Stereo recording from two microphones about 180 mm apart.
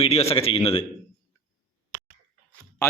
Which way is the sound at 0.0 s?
35° left (ahead or behind).